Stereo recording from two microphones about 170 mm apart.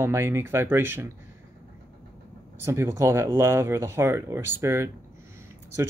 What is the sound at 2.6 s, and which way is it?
Speech, 15° right (ahead or behind).